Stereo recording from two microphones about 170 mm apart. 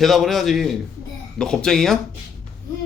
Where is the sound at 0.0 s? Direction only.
Centre (ahead or behind).